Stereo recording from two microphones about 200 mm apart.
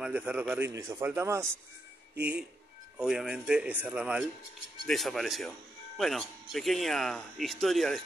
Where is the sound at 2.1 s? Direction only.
55° right (ahead or behind).